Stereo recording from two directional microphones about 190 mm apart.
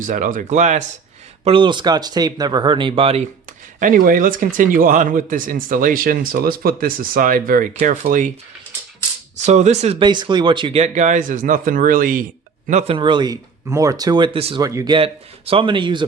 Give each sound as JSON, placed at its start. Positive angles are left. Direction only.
{"t": 0.0, "sound": "speech", "side_deg": -45}
{"t": 1.5, "sound": "speech", "side_deg": -25}
{"t": 3.8, "sound": "speech", "side_deg": -45}
{"t": 9.5, "sound": "speech", "side_deg": -35}
{"t": 12.9, "sound": "speech", "side_deg": -25}
{"t": 14.6, "sound": "speech", "side_deg": -15}
{"t": 14.9, "sound": "speech", "side_deg": -30}